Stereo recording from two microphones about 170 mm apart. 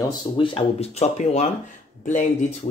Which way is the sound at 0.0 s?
30° left (ahead or behind).